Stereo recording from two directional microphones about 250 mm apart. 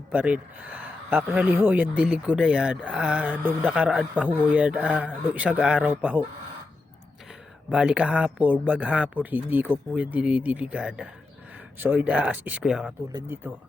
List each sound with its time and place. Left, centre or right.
0.1 s speech: centre
7.7 s speech: centre